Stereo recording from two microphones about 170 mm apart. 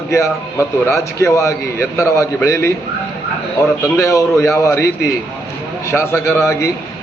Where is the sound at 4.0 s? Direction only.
15° left (ahead or behind).